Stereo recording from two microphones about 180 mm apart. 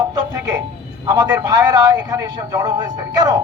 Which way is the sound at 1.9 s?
20° right (ahead or behind).